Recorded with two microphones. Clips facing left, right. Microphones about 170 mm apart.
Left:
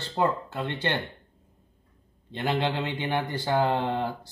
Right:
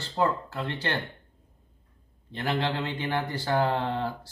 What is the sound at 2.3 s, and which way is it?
Speech, 20° left (ahead or behind).